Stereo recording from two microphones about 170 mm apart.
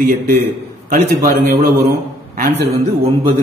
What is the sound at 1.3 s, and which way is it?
Speech, 55° right (ahead or behind).